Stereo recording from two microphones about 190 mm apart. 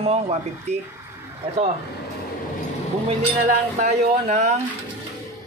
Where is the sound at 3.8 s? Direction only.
40° right (ahead or behind).